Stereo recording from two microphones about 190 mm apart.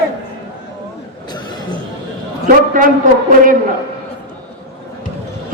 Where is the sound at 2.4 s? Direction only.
45° right (ahead or behind).